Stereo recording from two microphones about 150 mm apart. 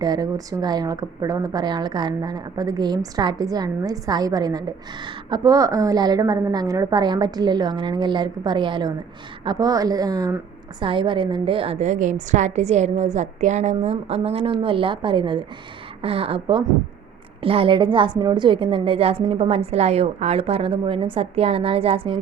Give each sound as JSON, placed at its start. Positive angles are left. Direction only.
{"t": 0.0, "sound": "a woman's voice", "side_deg": -25}